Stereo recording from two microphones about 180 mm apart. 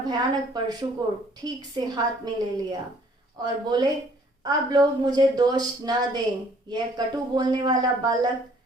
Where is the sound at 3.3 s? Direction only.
25° right (ahead or behind).